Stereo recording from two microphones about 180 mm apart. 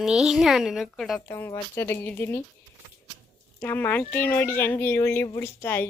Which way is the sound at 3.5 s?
10° left (ahead or behind).